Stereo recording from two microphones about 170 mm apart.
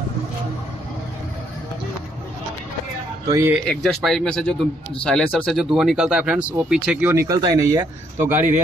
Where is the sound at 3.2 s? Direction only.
20° right (ahead or behind).